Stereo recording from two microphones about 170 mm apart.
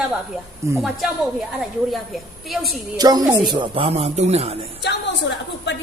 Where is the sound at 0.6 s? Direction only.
15° right (ahead or behind).